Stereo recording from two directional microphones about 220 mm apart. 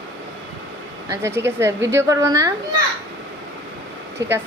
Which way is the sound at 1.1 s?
10° right (ahead or behind).